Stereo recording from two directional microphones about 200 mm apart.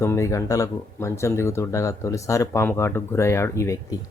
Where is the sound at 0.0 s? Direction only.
15° left (ahead or behind).